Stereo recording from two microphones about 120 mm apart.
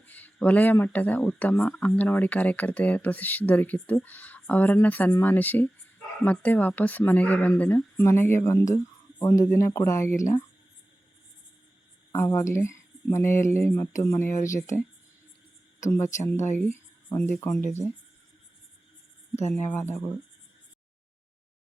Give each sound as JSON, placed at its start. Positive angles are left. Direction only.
{"t": 0.0, "sound": "speech", "side_deg": 15}
{"t": 12.1, "sound": "speech", "side_deg": 25}
{"t": 16.2, "sound": "speech", "side_deg": 20}
{"t": 19.5, "sound": "speech", "side_deg": 20}